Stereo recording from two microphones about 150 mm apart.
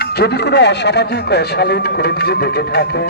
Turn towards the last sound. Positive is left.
turn(degrees=90)